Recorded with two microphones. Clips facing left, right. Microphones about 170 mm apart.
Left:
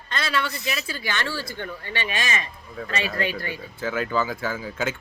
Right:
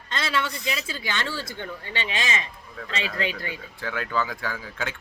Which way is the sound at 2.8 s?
5° left (ahead or behind).